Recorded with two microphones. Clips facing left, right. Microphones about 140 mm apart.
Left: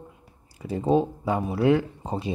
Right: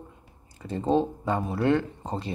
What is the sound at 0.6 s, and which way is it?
Speech, 10° left (ahead or behind).